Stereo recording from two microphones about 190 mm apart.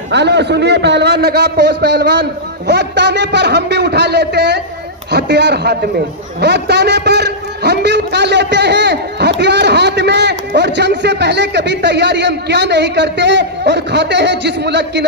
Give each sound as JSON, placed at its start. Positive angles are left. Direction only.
{"t": 0.1, "sound": "a man's voice", "side_deg": -65}